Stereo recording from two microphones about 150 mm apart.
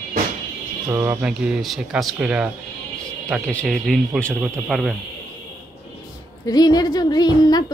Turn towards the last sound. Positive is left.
turn(degrees=25)  # may be behind; listen again after turning